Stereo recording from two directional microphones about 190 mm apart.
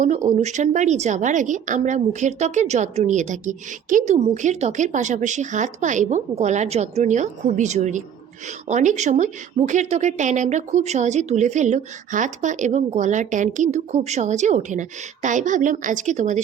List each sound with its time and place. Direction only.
0.3 s a woman's voice: 35° right (ahead or behind)